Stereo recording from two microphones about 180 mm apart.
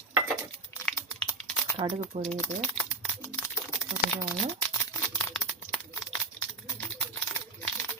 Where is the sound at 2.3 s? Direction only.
10° left (ahead or behind).